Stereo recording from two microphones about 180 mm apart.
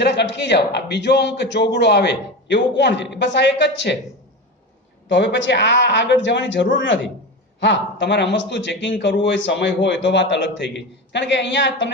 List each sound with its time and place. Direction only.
0.0 s a man's voice: 75° left (ahead or behind)
5.0 s a man's voice: 85° left